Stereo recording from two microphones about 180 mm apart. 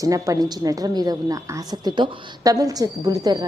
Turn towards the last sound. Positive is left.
turn(degrees=-20)  # may be behind; listen again after turning